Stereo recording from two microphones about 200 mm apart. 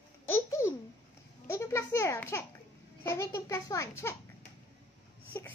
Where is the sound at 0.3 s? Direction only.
15° left (ahead or behind).